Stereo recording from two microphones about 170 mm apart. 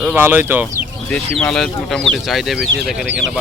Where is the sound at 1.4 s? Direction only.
5° left (ahead or behind).